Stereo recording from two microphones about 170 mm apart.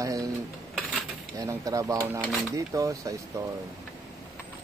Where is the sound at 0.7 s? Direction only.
Centre (ahead or behind).